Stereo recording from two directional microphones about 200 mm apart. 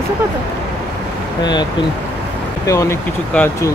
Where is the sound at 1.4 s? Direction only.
20° left (ahead or behind).